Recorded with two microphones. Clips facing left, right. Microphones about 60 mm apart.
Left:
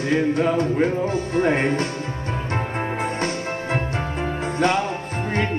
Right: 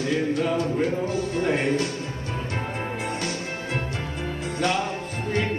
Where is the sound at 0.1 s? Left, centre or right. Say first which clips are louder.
Left 6 dB; left.